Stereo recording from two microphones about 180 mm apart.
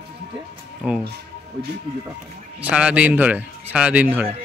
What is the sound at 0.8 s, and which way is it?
Speech, 5° right (ahead or behind).